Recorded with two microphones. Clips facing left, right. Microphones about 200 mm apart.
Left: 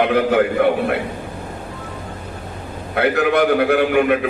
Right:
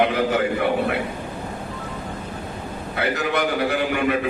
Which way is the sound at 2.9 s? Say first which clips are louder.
Left 7 dB; 60° left (ahead or behind).